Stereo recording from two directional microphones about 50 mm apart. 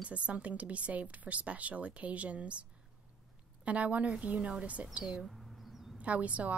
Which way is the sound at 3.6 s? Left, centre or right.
Right.